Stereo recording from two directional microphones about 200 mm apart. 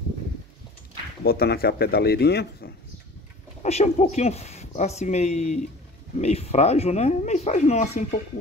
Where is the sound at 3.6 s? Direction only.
35° left (ahead or behind).